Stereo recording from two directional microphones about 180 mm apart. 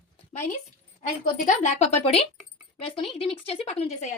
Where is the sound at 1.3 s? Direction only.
45° left (ahead or behind).